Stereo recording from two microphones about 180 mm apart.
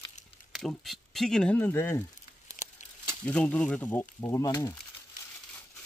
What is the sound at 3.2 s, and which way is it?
Speech, 5° left (ahead or behind).